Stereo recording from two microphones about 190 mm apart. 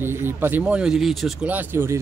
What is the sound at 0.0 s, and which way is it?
Speech, 10° right (ahead or behind).